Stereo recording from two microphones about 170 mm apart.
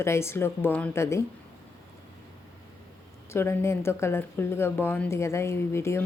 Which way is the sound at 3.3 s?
15° left (ahead or behind).